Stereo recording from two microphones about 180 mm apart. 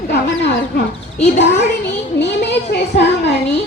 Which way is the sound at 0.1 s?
70° left (ahead or behind).